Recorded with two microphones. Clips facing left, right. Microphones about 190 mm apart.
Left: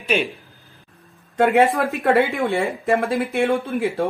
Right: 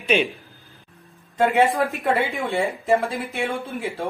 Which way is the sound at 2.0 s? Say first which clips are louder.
Left 5 dB; 55° left (ahead or behind).